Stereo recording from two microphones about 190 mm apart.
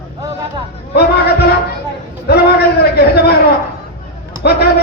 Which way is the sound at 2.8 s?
55° left (ahead or behind).